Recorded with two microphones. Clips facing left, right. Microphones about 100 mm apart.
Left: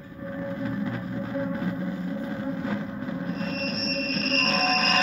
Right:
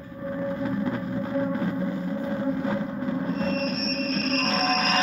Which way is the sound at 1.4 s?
15° right (ahead or behind).